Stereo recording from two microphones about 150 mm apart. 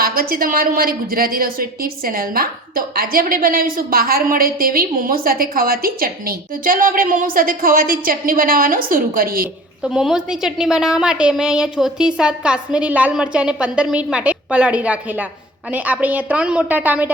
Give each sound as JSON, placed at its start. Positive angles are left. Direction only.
{"t": 0.0, "sound": "a woman's voice", "side_deg": -75}
{"t": 9.8, "sound": "a woman's voice", "side_deg": -5}